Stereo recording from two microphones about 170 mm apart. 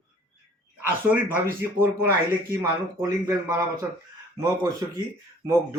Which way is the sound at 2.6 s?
20° right (ahead or behind).